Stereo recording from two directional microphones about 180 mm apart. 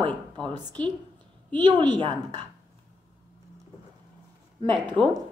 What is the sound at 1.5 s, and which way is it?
Speech, 25° right (ahead or behind).